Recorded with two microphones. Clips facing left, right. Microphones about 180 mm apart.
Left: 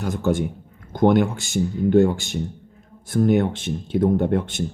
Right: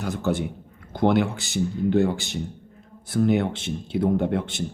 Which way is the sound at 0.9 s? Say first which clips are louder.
Left 3 dB; 45° left (ahead or behind).